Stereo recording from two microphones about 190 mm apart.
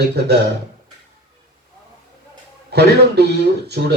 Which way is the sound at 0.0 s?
60° right (ahead or behind).